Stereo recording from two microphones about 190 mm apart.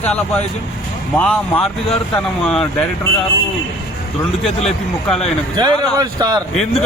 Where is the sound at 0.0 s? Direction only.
10° left (ahead or behind).